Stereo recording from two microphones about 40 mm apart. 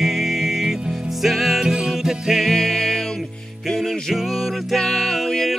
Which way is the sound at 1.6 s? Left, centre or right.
Centre.